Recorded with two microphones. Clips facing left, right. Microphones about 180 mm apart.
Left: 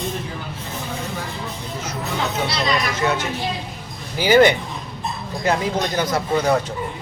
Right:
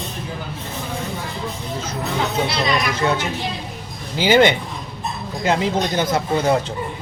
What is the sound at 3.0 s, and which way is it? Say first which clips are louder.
A woman's voice: right 1 dB; 30° right (ahead or behind).